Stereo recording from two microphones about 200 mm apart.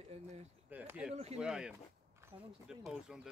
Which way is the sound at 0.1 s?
30° right (ahead or behind).